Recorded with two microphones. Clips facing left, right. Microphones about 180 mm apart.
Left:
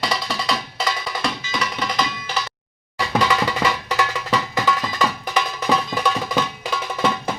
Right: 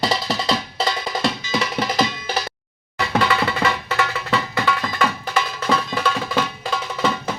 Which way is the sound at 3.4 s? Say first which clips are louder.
Even; 10° left (ahead or behind).